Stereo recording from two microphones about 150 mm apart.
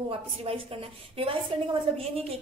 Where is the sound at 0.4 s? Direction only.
40° right (ahead or behind).